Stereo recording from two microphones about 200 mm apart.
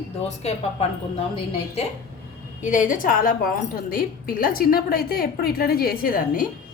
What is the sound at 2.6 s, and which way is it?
A woman's voice, 40° left (ahead or behind).